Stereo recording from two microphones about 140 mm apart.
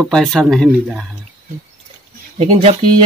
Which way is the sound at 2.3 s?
50° right (ahead or behind).